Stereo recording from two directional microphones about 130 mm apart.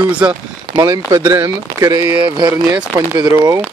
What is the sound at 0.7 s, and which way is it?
Speech, 25° right (ahead or behind).